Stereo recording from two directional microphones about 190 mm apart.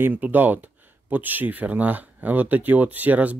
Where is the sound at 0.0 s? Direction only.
10° right (ahead or behind).